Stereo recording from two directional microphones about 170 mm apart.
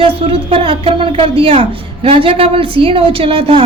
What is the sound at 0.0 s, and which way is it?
A woman's voice, 35° right (ahead or behind).